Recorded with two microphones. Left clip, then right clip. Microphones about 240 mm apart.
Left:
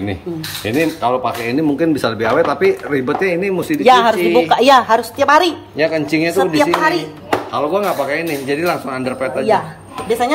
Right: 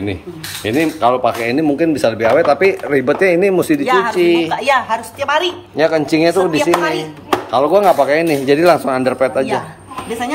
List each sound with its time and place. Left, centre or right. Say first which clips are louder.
0.7 s speech: right 2 dB; centre
3.8 s speech: left 9 dB; left
4.2 s a man's voice: even; centre
4.5 s a woman's voice: left 5 dB; left
5.8 s a man's voice: right 3 dB; centre